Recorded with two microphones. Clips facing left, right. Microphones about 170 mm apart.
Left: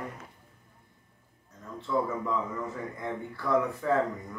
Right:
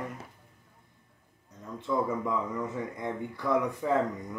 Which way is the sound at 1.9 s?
20° right (ahead or behind).